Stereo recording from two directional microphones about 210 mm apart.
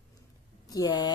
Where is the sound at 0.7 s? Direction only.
20° left (ahead or behind).